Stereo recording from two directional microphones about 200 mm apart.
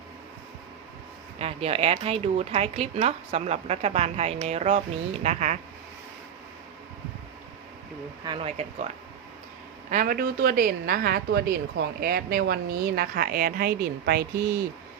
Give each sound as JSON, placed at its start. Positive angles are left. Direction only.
{"t": 1.4, "sound": "speech", "side_deg": -30}
{"t": 8.2, "sound": "speech", "side_deg": -25}
{"t": 9.9, "sound": "a woman's voice", "side_deg": -40}